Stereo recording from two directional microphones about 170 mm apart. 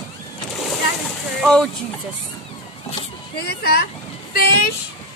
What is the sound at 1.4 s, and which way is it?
Speech, 5° left (ahead or behind).